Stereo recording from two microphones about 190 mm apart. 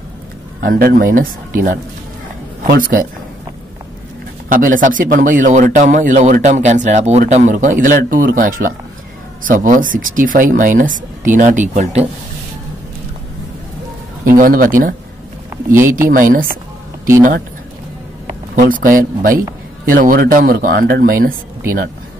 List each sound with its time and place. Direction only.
0.6 s speech: 50° right (ahead or behind)
4.5 s speech: 45° right (ahead or behind)
14.2 s speech: 45° right (ahead or behind)
15.8 s speech: 15° right (ahead or behind)
16.1 s speech: 45° right (ahead or behind)
18.6 s speech: 45° right (ahead or behind)